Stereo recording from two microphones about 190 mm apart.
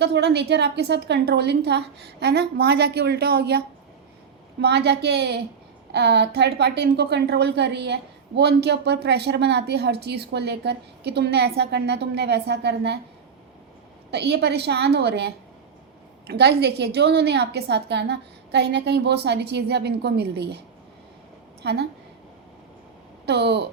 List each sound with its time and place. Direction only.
0.0 s a woman's voice: 60° right (ahead or behind)
4.6 s a woman's voice: 60° right (ahead or behind)
14.1 s a woman's voice: 60° right (ahead or behind)
21.6 s a woman's voice: 60° right (ahead or behind)
23.2 s speech: 60° right (ahead or behind)